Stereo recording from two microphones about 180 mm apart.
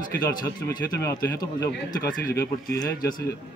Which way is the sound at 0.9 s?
15° left (ahead or behind).